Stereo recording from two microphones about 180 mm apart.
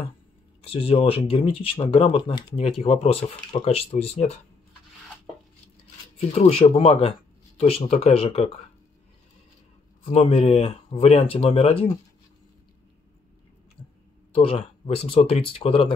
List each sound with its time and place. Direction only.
0.6 s speech: 30° left (ahead or behind)
6.1 s speech: 35° left (ahead or behind)
10.0 s speech: 35° left (ahead or behind)
14.3 s speech: 30° left (ahead or behind)